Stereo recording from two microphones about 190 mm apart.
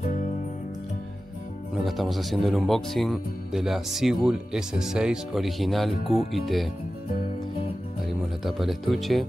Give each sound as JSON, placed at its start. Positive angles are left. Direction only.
{"t": 1.9, "sound": "speech", "side_deg": 0}
{"t": 8.5, "sound": "speech", "side_deg": 0}